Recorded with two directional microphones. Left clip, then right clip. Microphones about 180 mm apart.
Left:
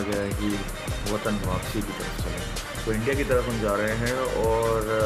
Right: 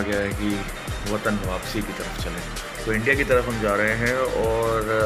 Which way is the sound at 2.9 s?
Centre (ahead or behind).